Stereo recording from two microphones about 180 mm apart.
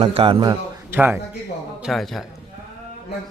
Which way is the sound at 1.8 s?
Centre (ahead or behind).